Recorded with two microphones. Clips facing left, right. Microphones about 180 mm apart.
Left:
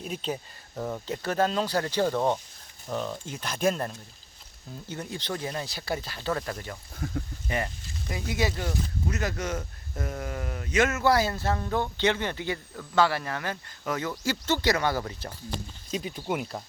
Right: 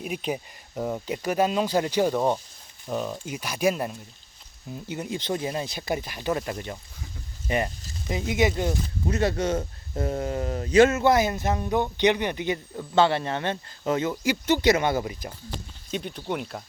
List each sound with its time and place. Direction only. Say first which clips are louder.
0.0 s speech: right 3 dB; 15° right (ahead or behind)
7.0 s speech: left 10 dB; 55° left (ahead or behind)
7.4 s speech: right 8 dB; 20° right (ahead or behind)
15.9 s speech: right 1 dB; 5° left (ahead or behind)